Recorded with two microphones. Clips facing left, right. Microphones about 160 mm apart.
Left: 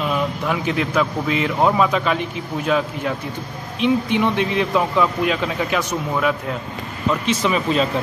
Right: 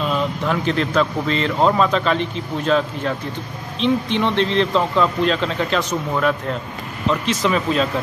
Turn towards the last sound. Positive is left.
turn(degrees=0)  # may be behind; listen again after turning